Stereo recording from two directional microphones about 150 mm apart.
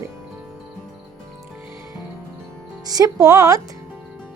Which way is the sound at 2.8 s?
25° right (ahead or behind).